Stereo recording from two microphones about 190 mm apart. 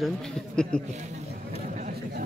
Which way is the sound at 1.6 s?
40° right (ahead or behind).